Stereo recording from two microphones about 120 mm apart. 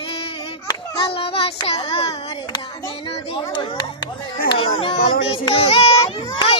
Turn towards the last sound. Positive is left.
turn(degrees=45)  # may be behind; listen again after turning